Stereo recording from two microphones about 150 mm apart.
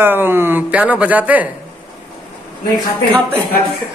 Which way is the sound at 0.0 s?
15° right (ahead or behind).